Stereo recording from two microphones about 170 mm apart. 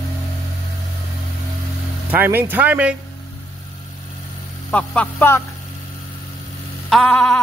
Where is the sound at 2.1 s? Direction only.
10° right (ahead or behind).